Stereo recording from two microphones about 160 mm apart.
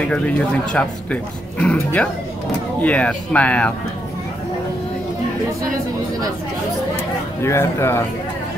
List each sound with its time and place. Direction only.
0.1 s speech: 5° left (ahead or behind)
7.4 s speech: 15° left (ahead or behind)